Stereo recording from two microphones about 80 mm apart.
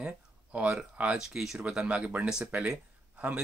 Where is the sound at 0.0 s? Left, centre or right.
Centre.